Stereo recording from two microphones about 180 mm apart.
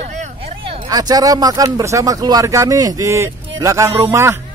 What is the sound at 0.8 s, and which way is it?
Speech, 20° right (ahead or behind).